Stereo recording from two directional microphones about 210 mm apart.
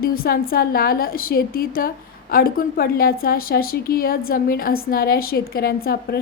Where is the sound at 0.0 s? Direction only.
45° left (ahead or behind).